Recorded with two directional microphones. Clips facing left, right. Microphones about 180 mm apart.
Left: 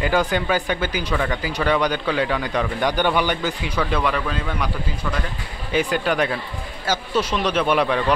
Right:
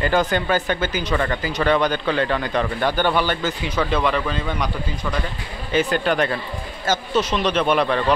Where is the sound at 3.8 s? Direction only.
Centre (ahead or behind).